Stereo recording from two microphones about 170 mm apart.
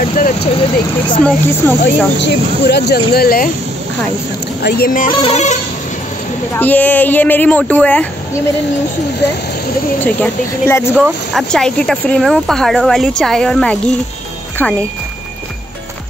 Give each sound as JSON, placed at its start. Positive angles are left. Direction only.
{"t": 0.0, "sound": "speech", "side_deg": 50}
{"t": 1.2, "sound": "speech", "side_deg": 10}
{"t": 2.2, "sound": "speech", "side_deg": 80}
{"t": 4.6, "sound": "speech", "side_deg": 65}
{"t": 5.2, "sound": "a sound", "side_deg": 40}
{"t": 6.5, "sound": "speech", "side_deg": 10}
{"t": 9.9, "sound": "speech", "side_deg": 10}
{"t": 11.3, "sound": "speech", "side_deg": 5}